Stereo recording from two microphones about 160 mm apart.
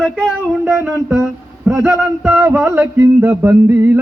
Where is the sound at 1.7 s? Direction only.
15° right (ahead or behind).